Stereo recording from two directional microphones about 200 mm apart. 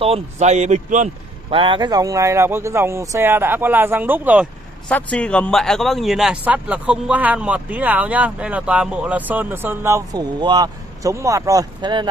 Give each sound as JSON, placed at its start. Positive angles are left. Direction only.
{"t": 0.0, "sound": "speech", "side_deg": -30}
{"t": 1.5, "sound": "a man's voice", "side_deg": -25}
{"t": 4.8, "sound": "a man's voice", "side_deg": 5}